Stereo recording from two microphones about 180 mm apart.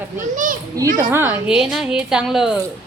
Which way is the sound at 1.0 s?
15° right (ahead or behind).